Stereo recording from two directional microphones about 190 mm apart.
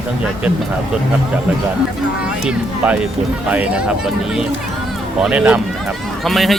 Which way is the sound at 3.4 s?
5° right (ahead or behind).